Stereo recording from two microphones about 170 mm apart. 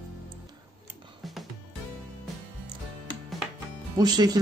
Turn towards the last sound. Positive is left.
turn(degrees=-25)  # may be behind; listen again after turning